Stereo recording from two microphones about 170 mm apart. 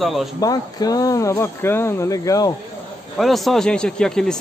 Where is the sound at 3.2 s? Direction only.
Centre (ahead or behind).